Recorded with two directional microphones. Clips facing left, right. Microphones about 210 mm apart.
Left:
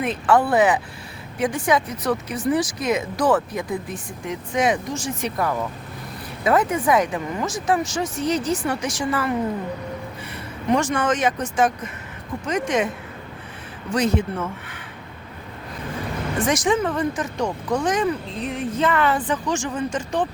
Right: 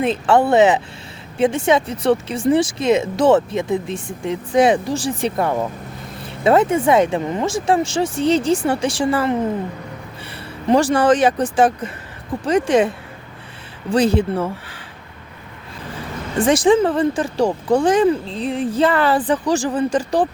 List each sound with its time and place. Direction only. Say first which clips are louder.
0.0 s speech: right 4 dB; 25° right (ahead or behind)
10.3 s speech: right 5 dB; 35° right (ahead or behind)
13.9 s speech: right 5 dB; 30° right (ahead or behind)
16.4 s speech: right 7 dB; 30° right (ahead or behind)